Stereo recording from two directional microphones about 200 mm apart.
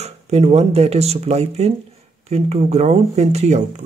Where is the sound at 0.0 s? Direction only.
30° right (ahead or behind).